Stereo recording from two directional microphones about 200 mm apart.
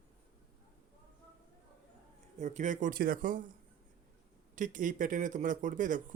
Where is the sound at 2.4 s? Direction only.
35° right (ahead or behind).